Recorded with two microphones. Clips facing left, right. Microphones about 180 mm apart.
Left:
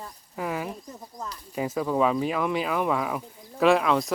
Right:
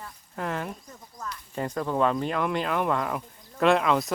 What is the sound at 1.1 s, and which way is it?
Speech, 35° left (ahead or behind).